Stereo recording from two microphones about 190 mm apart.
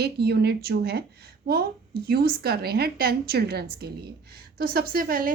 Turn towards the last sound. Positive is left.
turn(degrees=-50)  # may be behind; listen again after turning